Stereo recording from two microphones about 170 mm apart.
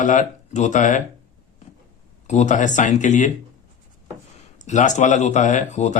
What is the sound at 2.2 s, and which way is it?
Speech, 45° left (ahead or behind).